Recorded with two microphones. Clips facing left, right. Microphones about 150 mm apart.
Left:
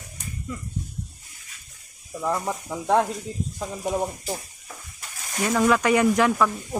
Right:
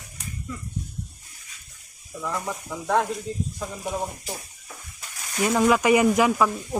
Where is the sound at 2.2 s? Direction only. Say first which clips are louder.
Left 4 dB; 30° left (ahead or behind).